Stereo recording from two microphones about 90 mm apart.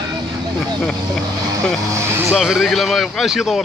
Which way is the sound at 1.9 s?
30° right (ahead or behind).